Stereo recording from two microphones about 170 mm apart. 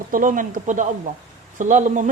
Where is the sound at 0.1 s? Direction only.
50° right (ahead or behind).